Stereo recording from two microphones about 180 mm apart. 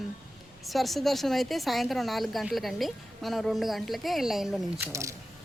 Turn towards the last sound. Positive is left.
turn(degrees=-15)  # may be behind; listen again after turning